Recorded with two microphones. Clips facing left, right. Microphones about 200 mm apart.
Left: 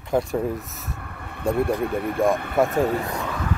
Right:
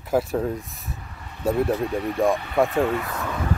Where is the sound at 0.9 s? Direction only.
60° left (ahead or behind).